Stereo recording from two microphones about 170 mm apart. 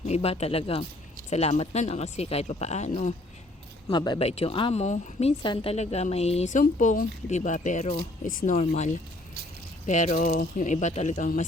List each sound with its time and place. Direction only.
0.0 s a woman's voice: 40° left (ahead or behind)
3.8 s speech: 25° left (ahead or behind)
4.2 s a woman's voice: 35° left (ahead or behind)